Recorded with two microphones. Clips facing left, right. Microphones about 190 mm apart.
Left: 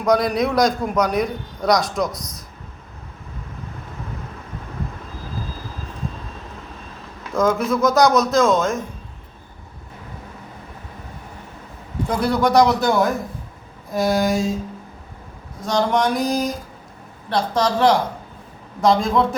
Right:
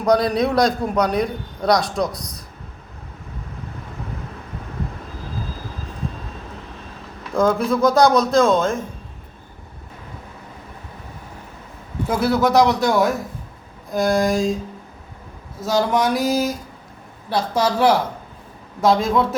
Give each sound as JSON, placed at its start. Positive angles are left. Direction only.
{"t": 0.0, "sound": "a man's voice", "side_deg": -30}
{"t": 7.3, "sound": "speech", "side_deg": -30}
{"t": 12.0, "sound": "a man's voice", "side_deg": -5}
{"t": 15.6, "sound": "a man's voice", "side_deg": -5}